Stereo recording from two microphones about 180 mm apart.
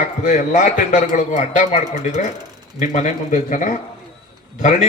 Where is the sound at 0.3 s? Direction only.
40° left (ahead or behind).